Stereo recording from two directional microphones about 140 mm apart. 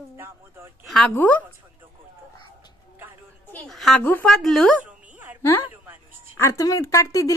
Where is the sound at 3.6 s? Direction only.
Centre (ahead or behind).